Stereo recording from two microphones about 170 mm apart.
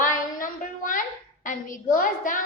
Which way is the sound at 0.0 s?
55° left (ahead or behind).